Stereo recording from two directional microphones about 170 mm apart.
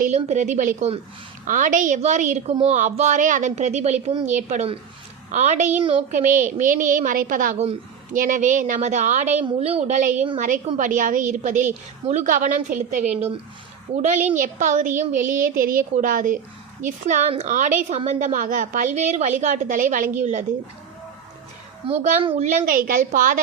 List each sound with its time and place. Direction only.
0.0 s a woman's voice: 45° right (ahead or behind)
4.3 s a woman's voice: 45° right (ahead or behind)
13.1 s a woman's voice: 35° right (ahead or behind)
21.8 s a woman's voice: 35° right (ahead or behind)
22.4 s a woman's voice: 60° right (ahead or behind)